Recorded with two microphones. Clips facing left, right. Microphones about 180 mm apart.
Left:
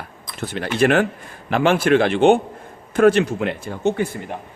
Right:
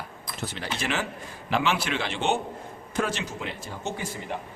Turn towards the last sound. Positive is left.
turn(degrees=60)  # may be behind; listen again after turning